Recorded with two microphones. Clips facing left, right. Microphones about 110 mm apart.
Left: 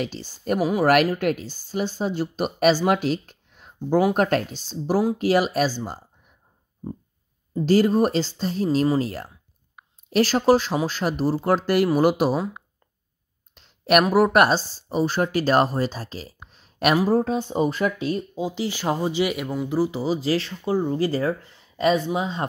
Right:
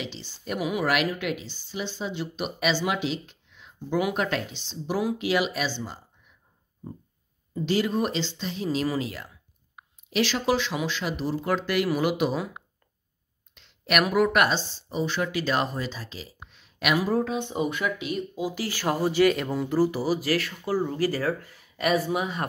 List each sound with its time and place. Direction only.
0.0 s speech: 45° left (ahead or behind)
1.1 s speech: 45° left (ahead or behind)
7.5 s speech: 40° left (ahead or behind)
13.6 s a sound: 40° left (ahead or behind)
14.0 s speech: 35° left (ahead or behind); by 19.4 s 15° left (ahead or behind)
19.4 s speech: centre (ahead or behind)
19.7 s speech: 15° left (ahead or behind)